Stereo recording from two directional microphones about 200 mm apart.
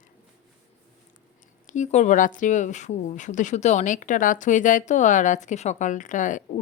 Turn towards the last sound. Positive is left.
turn(degrees=40)  # may be behind; listen again after turning